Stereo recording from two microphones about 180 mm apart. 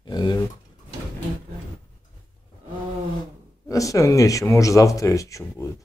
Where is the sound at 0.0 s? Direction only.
25° left (ahead or behind).